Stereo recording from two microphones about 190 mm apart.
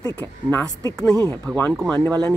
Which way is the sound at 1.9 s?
20° right (ahead or behind).